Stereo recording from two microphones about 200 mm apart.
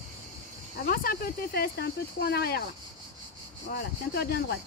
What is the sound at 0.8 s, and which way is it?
Speech, 45° left (ahead or behind).